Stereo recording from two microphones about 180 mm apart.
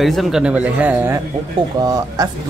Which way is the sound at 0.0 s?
Centre (ahead or behind).